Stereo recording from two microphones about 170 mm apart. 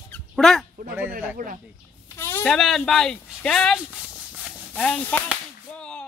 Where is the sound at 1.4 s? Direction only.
55° right (ahead or behind).